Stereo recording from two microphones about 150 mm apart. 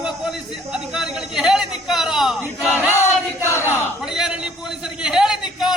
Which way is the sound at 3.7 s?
5° right (ahead or behind).